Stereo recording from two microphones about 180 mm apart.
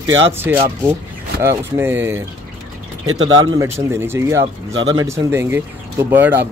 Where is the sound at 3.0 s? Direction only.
25° right (ahead or behind).